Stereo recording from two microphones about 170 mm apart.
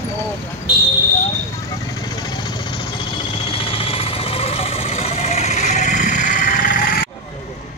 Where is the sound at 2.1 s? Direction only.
25° left (ahead or behind); by 7.1 s 55° left (ahead or behind).